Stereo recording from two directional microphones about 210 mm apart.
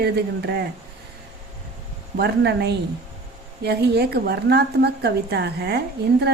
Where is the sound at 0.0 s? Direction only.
50° right (ahead or behind).